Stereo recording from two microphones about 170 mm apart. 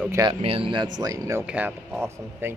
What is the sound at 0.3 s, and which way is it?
Speech, 35° right (ahead or behind).